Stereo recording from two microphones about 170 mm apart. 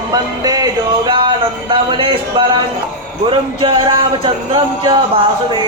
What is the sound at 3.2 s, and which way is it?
Speech, 30° right (ahead or behind).